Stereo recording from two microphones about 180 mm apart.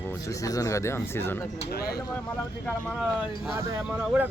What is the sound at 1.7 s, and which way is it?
Speech, 60° left (ahead or behind).